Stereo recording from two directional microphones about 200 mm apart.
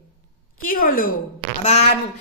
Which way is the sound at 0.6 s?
45° left (ahead or behind).